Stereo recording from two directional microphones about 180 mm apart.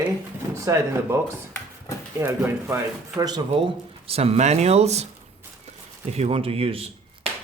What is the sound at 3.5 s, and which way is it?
Speech, 30° right (ahead or behind).